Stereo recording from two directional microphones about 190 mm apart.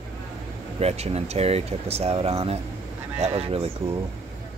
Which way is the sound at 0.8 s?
35° right (ahead or behind).